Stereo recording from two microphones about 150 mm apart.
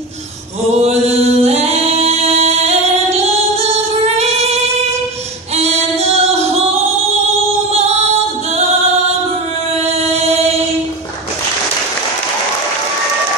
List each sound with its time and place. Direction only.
0.7 s a capella: 45° right (ahead or behind)
5.6 s music: 45° right (ahead or behind)